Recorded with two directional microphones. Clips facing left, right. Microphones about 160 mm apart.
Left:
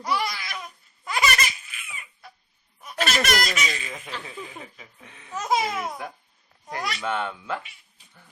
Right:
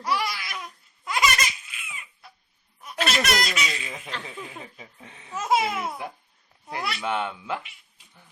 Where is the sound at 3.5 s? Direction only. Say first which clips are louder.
Left 1 dB; centre (ahead or behind).